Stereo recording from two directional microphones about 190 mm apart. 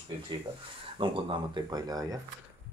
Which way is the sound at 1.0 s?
25° right (ahead or behind).